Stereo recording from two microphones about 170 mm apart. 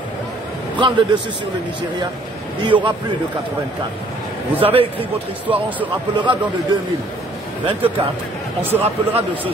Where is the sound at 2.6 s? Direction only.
25° right (ahead or behind).